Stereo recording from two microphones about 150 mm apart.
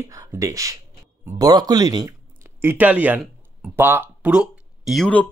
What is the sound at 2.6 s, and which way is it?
Speech, 15° right (ahead or behind).